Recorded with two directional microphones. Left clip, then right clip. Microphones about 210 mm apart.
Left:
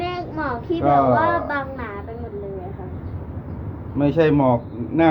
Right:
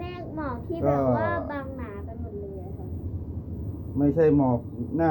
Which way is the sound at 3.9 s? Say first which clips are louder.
Left 4 dB; 5° left (ahead or behind).